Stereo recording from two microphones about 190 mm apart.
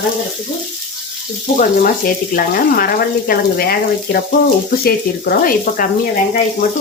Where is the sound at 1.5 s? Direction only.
45° left (ahead or behind).